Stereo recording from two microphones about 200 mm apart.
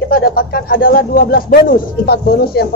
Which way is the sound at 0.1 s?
50° left (ahead or behind).